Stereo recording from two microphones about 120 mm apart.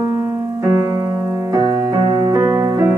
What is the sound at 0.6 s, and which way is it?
Music, 25° right (ahead or behind).